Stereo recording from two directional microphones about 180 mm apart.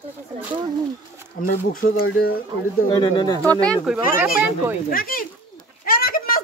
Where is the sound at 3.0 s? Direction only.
25° left (ahead or behind).